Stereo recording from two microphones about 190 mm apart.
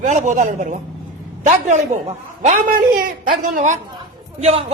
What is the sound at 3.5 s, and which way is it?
A woman's voice, 40° right (ahead or behind).